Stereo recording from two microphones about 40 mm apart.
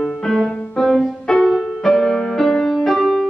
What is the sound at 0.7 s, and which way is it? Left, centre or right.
Music, centre.